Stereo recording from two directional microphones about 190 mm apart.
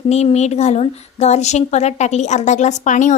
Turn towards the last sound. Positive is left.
turn(degrees=40)  # may be behind; listen again after turning